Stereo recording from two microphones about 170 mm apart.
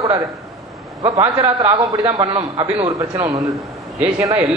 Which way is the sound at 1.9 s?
20° right (ahead or behind).